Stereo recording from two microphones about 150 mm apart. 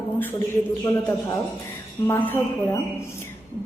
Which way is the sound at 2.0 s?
15° left (ahead or behind).